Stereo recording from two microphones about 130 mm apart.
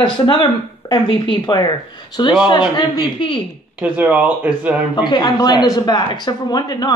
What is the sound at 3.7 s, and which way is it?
Speech, 10° right (ahead or behind).